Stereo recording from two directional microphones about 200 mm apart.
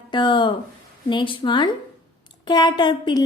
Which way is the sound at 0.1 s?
25° left (ahead or behind).